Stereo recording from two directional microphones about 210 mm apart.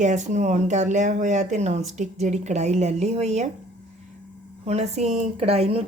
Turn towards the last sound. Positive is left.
turn(degrees=-30)  # may be behind; listen again after turning